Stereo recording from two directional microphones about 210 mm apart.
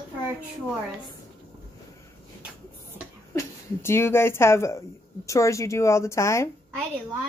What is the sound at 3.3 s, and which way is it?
Speech, 10° left (ahead or behind).